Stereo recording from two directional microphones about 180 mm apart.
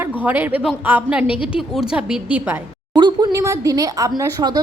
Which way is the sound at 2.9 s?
25° right (ahead or behind).